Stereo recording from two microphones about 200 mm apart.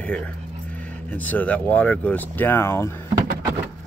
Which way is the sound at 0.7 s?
5° left (ahead or behind).